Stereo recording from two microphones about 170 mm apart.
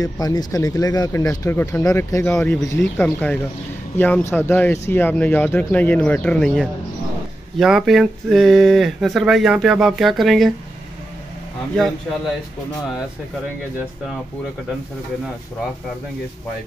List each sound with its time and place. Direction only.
0.0 s speech: 20° left (ahead or behind); by 10.5 s centre (ahead or behind)